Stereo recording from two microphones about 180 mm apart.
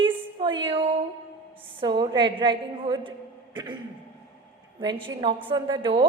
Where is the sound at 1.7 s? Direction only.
25° right (ahead or behind).